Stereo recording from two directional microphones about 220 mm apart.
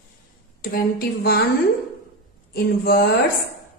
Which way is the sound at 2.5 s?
45° left (ahead or behind).